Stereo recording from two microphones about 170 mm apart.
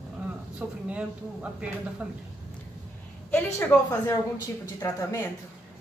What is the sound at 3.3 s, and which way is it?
A woman's voice, 15° left (ahead or behind).